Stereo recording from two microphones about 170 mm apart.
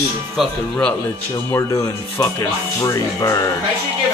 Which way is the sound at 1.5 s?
15° left (ahead or behind).